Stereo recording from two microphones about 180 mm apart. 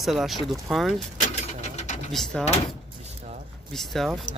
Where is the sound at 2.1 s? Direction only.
Centre (ahead or behind).